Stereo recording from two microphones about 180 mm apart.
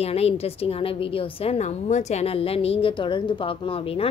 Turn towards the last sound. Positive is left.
turn(degrees=30)  # may be behind; listen again after turning